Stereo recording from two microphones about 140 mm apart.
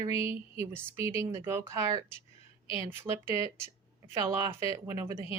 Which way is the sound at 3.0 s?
15° right (ahead or behind).